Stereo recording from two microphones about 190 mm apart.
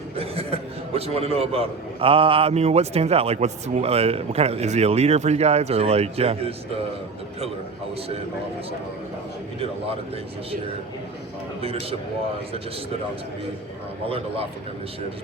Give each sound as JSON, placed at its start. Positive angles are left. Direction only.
{"t": 0.2, "sound": "a man's voice", "side_deg": -30}
{"t": 11.6, "sound": "a man's voice", "side_deg": -30}